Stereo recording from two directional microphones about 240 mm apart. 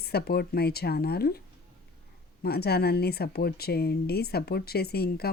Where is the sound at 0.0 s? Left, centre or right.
Left.